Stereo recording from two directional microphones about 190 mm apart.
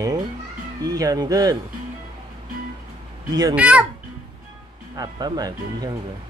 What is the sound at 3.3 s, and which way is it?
Speech, 20° right (ahead or behind).